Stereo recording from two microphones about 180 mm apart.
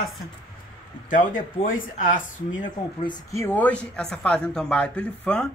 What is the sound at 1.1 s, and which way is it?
Speech, 45° left (ahead or behind).